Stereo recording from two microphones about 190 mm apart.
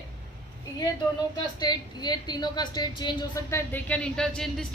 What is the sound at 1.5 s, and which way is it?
A woman's voice, 20° left (ahead or behind).